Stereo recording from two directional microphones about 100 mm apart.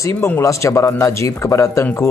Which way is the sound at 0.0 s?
25° left (ahead or behind).